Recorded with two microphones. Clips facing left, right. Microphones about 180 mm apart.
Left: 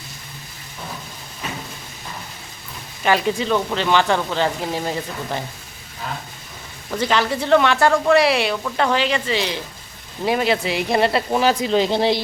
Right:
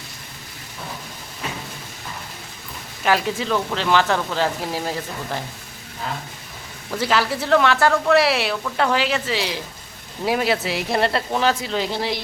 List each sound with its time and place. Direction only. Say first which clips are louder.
3.0 s speech: left 2 dB; centre (ahead or behind)
7.0 s speech: left 1 dB; 5° right (ahead or behind)
11.3 s speech: left 3 dB; 15° left (ahead or behind)